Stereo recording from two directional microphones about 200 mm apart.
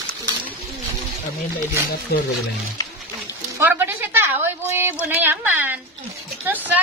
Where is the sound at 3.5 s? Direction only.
10° right (ahead or behind).